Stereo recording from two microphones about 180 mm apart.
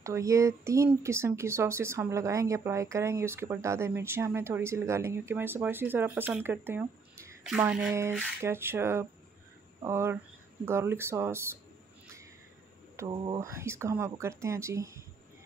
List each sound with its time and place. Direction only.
0.0 s speech: 15° right (ahead or behind)
13.1 s speech: 25° right (ahead or behind)
13.5 s speech: 15° right (ahead or behind)